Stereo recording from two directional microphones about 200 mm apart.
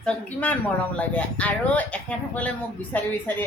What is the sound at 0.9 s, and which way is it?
A woman's voice, 5° left (ahead or behind).